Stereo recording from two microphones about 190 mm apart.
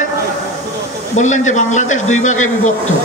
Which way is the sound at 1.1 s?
40° left (ahead or behind).